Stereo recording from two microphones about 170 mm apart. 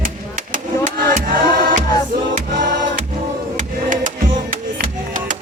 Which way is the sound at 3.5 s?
50° right (ahead or behind).